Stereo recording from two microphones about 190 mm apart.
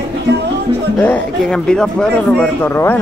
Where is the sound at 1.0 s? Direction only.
5° left (ahead or behind).